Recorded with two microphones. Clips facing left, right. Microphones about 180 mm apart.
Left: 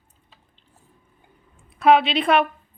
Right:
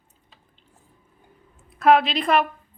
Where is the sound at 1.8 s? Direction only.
Centre (ahead or behind).